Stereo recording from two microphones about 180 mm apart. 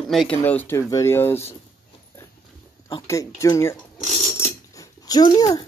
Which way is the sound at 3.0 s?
15° left (ahead or behind).